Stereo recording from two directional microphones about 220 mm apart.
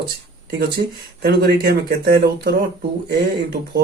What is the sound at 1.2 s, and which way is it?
Speech, 45° right (ahead or behind).